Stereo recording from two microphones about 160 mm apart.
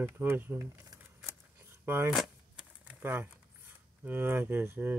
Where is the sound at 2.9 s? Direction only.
10° right (ahead or behind).